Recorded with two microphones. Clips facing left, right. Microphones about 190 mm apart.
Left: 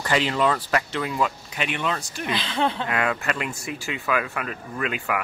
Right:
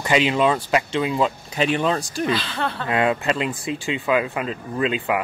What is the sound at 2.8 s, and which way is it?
Speech, 25° right (ahead or behind).